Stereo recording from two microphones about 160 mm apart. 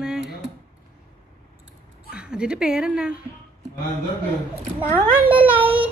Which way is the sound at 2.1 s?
5° right (ahead or behind).